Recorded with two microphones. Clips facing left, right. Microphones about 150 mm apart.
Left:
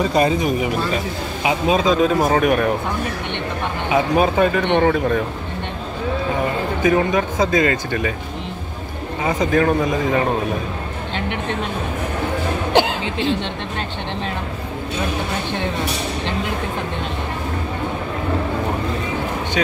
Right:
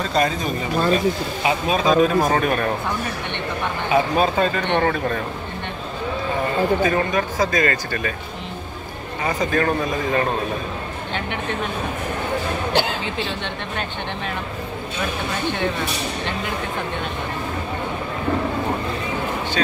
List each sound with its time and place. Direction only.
0.0 s speech: 10° left (ahead or behind)
3.9 s speech: 15° left (ahead or behind)
6.8 s speech: 15° left (ahead or behind)
9.2 s speech: 15° left (ahead or behind)